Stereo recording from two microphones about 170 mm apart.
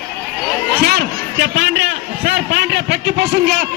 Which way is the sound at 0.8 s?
70° right (ahead or behind).